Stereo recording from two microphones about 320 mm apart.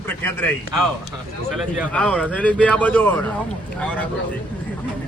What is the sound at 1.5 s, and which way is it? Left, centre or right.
A man's voice, centre.